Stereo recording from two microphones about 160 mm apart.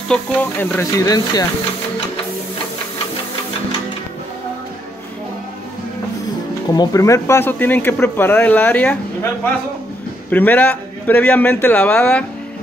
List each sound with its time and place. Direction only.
0.1 s speech: 10° left (ahead or behind)
6.7 s speech: 20° left (ahead or behind)